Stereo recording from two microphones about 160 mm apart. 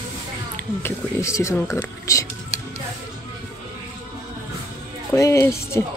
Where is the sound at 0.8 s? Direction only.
20° left (ahead or behind).